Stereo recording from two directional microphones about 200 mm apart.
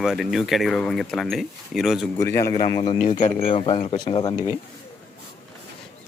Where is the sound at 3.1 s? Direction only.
35° left (ahead or behind).